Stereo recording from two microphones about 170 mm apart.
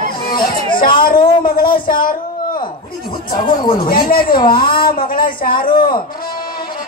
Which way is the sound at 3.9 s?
60° left (ahead or behind).